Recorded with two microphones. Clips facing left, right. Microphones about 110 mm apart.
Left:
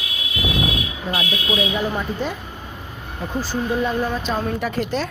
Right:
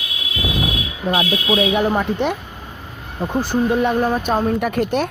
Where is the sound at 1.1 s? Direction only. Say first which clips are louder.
Right 6 dB; 65° right (ahead or behind).